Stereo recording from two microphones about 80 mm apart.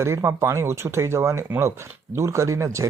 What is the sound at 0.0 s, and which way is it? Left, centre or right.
Speech, right.